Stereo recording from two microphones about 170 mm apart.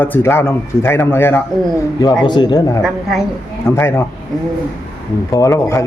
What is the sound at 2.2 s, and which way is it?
Speech, 25° left (ahead or behind).